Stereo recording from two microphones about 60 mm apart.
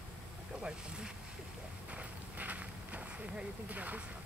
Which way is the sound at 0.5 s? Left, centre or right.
Centre.